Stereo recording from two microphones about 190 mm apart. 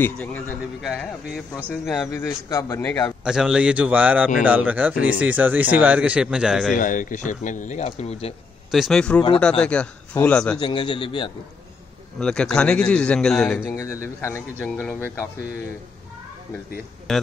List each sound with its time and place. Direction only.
0.0 s a man's voice: 10° left (ahead or behind)
2.0 s a man's voice: 15° left (ahead or behind)
3.3 s a man's voice: 5° right (ahead or behind)
6.8 s speech: 45° left (ahead or behind)
8.7 s a man's voice: centre (ahead or behind)
10.6 s a man's voice: 25° left (ahead or behind)
12.2 s a man's voice: 5° left (ahead or behind)
13.7 s a man's voice: 15° left (ahead or behind)
17.1 s a man's voice: centre (ahead or behind)